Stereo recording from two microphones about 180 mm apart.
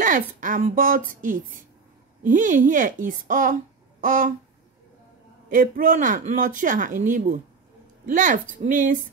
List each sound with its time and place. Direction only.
0.4 s speech: 45° right (ahead or behind)
4.0 s a sound: 45° right (ahead or behind)
5.5 s a woman's voice: 45° right (ahead or behind)